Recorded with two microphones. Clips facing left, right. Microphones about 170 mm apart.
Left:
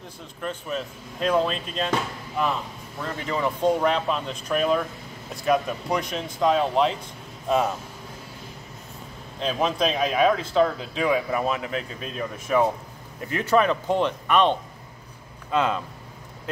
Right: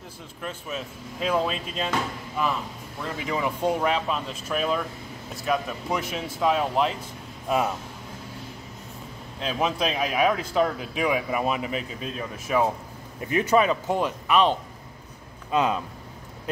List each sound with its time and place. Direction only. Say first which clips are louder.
0.4 s speech: left 4 dB; 5° right (ahead or behind)
3.2 s speech: left 2 dB; 10° right (ahead or behind)
9.4 s speech: left 2 dB; 5° right (ahead or behind)
13.3 s speech: even; 15° right (ahead or behind)
15.5 s speech: even; 15° right (ahead or behind)